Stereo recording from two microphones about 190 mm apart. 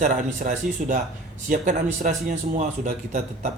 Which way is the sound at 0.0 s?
45° right (ahead or behind).